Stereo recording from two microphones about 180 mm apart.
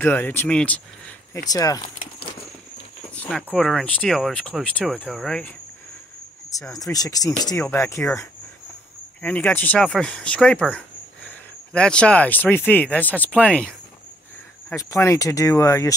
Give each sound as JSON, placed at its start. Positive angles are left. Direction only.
{"t": 0.0, "sound": "speech", "side_deg": 10}
{"t": 1.5, "sound": "speech", "side_deg": 20}
{"t": 3.2, "sound": "a sound", "side_deg": 5}
{"t": 3.5, "sound": "speech", "side_deg": 5}
{"t": 6.5, "sound": "speech", "side_deg": 20}
{"t": 14.7, "sound": "speech", "side_deg": 15}